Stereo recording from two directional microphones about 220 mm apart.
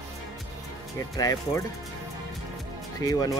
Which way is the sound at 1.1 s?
15° left (ahead or behind).